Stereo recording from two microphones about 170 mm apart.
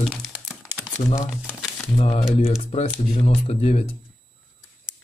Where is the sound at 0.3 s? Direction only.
10° right (ahead or behind).